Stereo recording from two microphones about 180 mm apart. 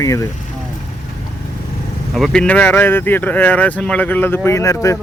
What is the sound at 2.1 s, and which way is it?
Speech, 5° left (ahead or behind).